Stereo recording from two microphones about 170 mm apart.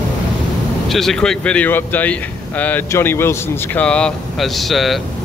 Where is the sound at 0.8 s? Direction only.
Centre (ahead or behind).